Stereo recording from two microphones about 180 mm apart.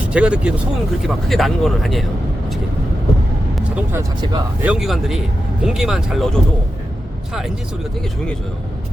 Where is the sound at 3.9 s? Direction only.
20° right (ahead or behind).